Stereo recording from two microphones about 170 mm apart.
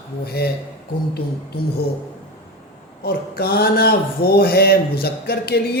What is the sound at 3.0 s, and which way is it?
Speech, 65° left (ahead or behind).